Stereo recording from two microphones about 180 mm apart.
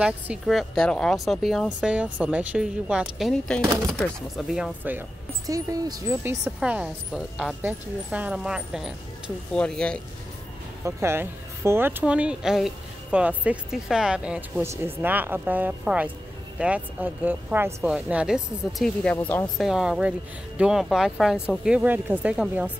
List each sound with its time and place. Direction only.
0.0 s speech: 5° right (ahead or behind)
5.5 s speech: 20° right (ahead or behind); by 10.0 s 5° left (ahead or behind)
10.8 s speech: 15° right (ahead or behind)
19.1 s speech: 10° left (ahead or behind); by 22.7 s 5° right (ahead or behind)